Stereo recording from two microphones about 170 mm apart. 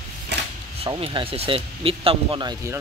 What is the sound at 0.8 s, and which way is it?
Speech, 30° right (ahead or behind).